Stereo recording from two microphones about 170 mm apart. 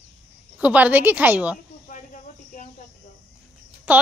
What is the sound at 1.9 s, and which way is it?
Cricket, 50° left (ahead or behind).